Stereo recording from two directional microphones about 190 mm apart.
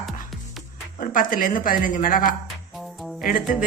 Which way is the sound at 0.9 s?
45° left (ahead or behind).